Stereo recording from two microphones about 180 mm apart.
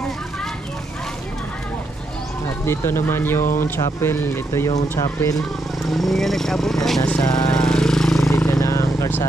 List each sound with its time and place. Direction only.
2.6 s speech: 15° left (ahead or behind)
5.9 s speech: centre (ahead or behind)
7.2 s speech: 20° left (ahead or behind)
7.5 s a sound: 5° left (ahead or behind)
8.3 s vehicle: 15° left (ahead or behind)